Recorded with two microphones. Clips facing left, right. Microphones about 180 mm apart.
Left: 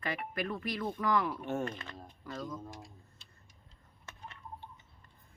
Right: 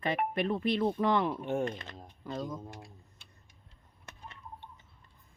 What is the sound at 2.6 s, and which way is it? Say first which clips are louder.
Tick-tock: right 1 dB; 60° right (ahead or behind).